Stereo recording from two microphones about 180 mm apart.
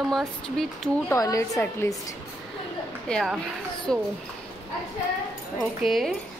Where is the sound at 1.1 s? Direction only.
20° left (ahead or behind).